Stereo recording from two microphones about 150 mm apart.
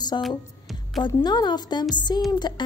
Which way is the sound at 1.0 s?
30° left (ahead or behind).